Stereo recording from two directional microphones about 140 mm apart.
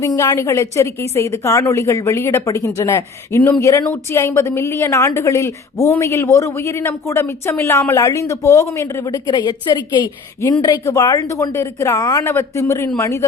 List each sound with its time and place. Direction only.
0.0 s a woman's voice: 20° left (ahead or behind)